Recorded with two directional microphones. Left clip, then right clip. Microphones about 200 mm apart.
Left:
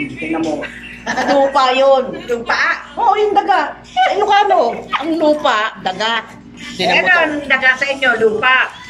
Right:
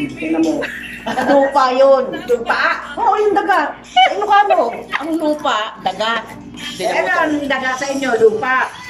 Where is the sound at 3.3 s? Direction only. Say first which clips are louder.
Left 1 dB; 5° right (ahead or behind).